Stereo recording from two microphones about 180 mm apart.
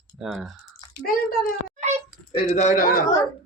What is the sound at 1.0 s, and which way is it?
Speech, 55° left (ahead or behind).